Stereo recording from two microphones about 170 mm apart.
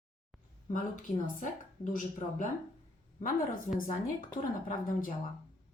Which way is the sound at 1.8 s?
50° left (ahead or behind).